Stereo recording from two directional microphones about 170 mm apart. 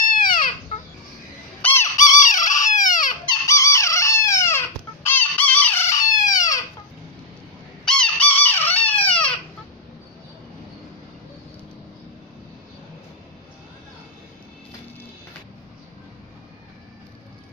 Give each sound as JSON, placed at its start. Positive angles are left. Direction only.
{"t": 0.1, "sound": "a sound", "side_deg": 55}
{"t": 1.6, "sound": "fowl", "side_deg": 15}
{"t": 2.4, "sound": "a sound", "side_deg": 45}
{"t": 3.3, "sound": "chicken", "side_deg": 20}
{"t": 6.3, "sound": "crying", "side_deg": 20}
{"t": 7.8, "sound": "chicken", "side_deg": 5}
{"t": 9.0, "sound": "crying", "side_deg": 10}